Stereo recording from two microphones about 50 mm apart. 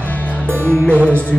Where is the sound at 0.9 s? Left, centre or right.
Right.